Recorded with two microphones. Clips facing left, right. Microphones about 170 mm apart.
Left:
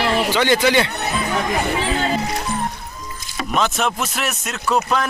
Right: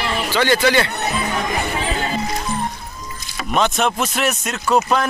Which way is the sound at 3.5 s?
Centre (ahead or behind).